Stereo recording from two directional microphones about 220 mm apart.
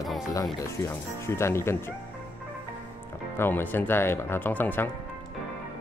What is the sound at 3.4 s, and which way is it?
Speech, 10° left (ahead or behind).